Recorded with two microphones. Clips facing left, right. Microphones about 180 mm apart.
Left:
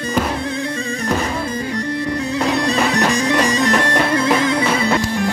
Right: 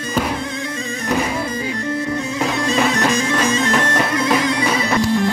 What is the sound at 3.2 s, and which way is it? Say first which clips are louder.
Music: left 2 dB; 35° left (ahead or behind).